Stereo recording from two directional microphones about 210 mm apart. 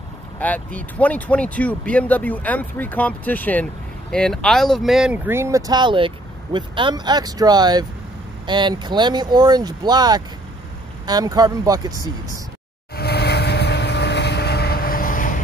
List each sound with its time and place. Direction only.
0.4 s speech: 5° left (ahead or behind); by 12.1 s 15° right (ahead or behind)
12.9 s vehicle: 50° left (ahead or behind)